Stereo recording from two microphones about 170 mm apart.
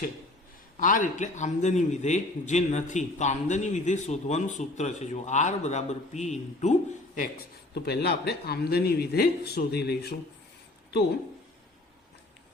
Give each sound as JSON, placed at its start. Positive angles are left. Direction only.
{"t": 0.8, "sound": "a man's voice", "side_deg": 50}
{"t": 7.2, "sound": "speech", "side_deg": 70}